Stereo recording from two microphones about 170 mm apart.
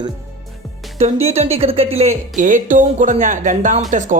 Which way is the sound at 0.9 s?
40° right (ahead or behind).